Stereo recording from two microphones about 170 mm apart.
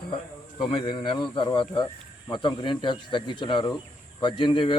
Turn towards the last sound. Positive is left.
turn(degrees=30)  # may be behind; listen again after turning